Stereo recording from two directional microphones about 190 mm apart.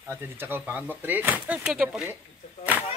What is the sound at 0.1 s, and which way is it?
Speech, 10° right (ahead or behind).